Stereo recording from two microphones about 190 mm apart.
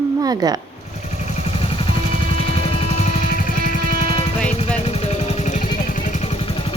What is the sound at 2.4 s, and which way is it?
Music, 30° left (ahead or behind).